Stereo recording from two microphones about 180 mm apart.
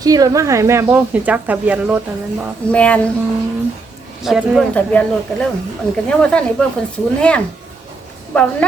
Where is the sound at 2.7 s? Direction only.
5° left (ahead or behind).